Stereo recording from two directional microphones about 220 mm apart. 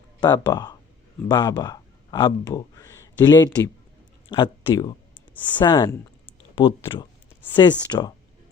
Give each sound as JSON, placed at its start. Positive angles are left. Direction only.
{"t": 0.2, "sound": "speech", "side_deg": 20}